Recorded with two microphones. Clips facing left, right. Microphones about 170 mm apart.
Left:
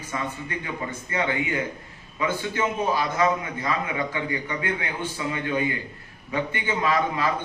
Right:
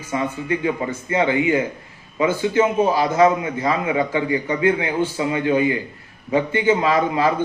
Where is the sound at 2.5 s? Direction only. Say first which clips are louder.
Right 8 dB; 25° right (ahead or behind).